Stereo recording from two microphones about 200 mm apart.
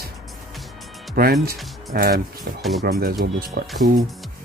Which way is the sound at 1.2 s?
50° right (ahead or behind).